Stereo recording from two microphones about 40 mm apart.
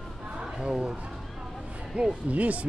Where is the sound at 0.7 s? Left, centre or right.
Right.